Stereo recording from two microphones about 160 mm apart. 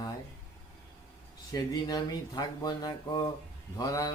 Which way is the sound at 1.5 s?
25° left (ahead or behind).